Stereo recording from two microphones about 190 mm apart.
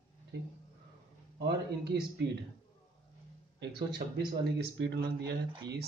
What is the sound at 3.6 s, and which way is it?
Speech, 60° right (ahead or behind).